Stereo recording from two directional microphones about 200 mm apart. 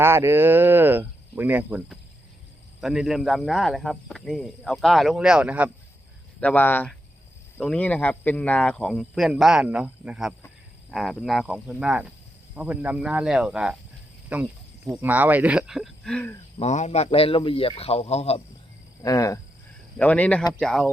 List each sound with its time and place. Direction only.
0.0 s speech: 10° right (ahead or behind)
6.4 s speech: 10° left (ahead or behind)
16.6 s a man's voice: 35° left (ahead or behind)
19.0 s speech: 15° left (ahead or behind)